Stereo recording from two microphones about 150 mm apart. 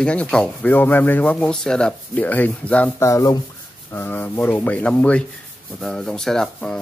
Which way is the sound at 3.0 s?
25° left (ahead or behind).